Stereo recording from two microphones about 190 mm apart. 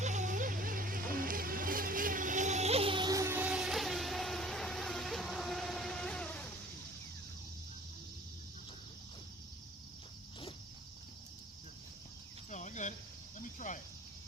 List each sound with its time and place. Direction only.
0.0 s a sound: 40° right (ahead or behind)
1.1 s motorboat: 50° right (ahead or behind); by 6.5 s 5° left (ahead or behind)
12.5 s cricket: 40° left (ahead or behind)